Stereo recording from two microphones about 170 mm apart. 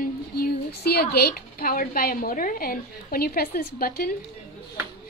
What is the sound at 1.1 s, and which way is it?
A woman's voice, 65° left (ahead or behind).